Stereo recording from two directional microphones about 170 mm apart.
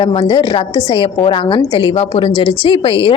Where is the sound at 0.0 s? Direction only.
30° left (ahead or behind).